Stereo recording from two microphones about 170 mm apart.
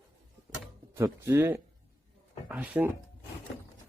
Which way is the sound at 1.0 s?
15° right (ahead or behind).